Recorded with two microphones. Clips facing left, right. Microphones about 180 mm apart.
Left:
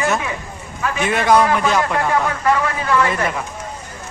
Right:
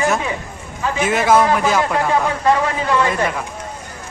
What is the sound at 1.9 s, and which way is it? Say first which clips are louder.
Speech: right 1 dB; 20° right (ahead or behind).